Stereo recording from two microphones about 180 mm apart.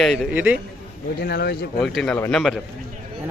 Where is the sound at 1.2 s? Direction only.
60° left (ahead or behind).